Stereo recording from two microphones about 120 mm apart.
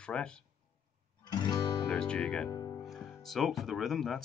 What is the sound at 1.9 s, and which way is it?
Speech, 5° left (ahead or behind).